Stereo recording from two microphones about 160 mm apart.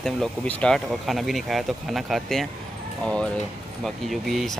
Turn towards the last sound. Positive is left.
turn(degrees=0)  # may be behind; listen again after turning